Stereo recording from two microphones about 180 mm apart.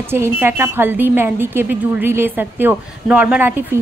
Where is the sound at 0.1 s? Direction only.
10° right (ahead or behind).